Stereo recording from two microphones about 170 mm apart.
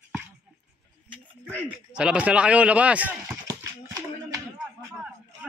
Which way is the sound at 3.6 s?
20° right (ahead or behind).